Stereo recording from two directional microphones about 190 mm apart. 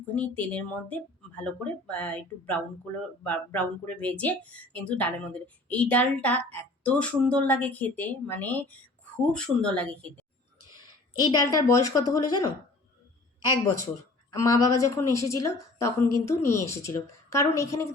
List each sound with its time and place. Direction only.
0.1 s speech: 10° left (ahead or behind)
11.2 s a woman's voice: 20° left (ahead or behind)